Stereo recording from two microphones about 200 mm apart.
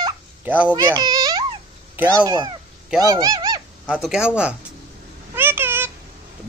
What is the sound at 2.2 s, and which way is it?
Speech, 20° right (ahead or behind).